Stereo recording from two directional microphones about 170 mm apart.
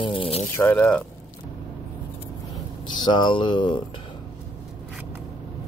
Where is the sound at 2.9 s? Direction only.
25° left (ahead or behind).